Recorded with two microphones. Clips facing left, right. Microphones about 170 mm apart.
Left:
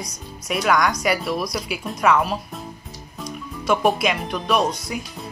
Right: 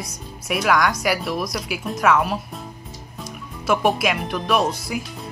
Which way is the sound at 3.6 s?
5° right (ahead or behind).